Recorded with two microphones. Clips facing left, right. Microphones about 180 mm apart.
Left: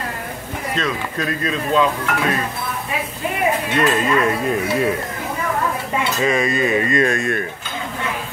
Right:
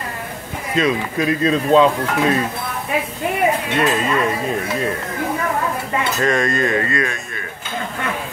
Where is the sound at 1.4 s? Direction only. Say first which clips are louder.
Right 5 dB; 30° right (ahead or behind).